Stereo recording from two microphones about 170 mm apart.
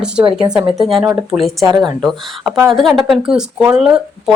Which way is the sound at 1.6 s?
20° right (ahead or behind).